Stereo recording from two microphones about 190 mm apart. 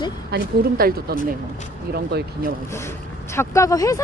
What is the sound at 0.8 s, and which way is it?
Speech, 50° right (ahead or behind).